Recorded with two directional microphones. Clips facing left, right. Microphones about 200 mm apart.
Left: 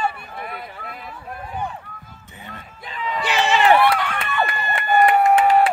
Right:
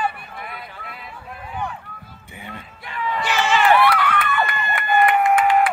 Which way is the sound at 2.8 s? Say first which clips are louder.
Right 1 dB; 20° left (ahead or behind).